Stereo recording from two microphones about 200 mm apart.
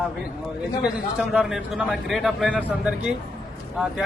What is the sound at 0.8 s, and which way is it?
A man's voice, 5° right (ahead or behind).